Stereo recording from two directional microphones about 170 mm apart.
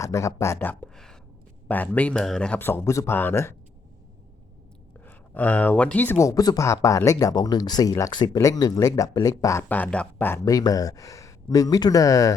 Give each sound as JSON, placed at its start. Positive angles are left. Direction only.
{"t": 0.0, "sound": "speech", "side_deg": 20}
{"t": 5.0, "sound": "speech", "side_deg": 10}